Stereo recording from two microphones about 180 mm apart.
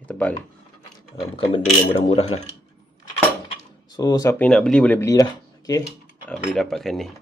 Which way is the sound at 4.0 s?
20° left (ahead or behind).